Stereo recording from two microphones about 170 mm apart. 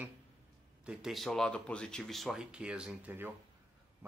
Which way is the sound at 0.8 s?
Centre (ahead or behind).